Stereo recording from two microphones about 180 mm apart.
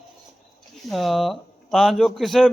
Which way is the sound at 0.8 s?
Centre (ahead or behind).